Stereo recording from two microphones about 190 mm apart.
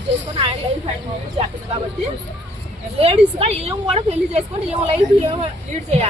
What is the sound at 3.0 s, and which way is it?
A woman's voice, 30° right (ahead or behind).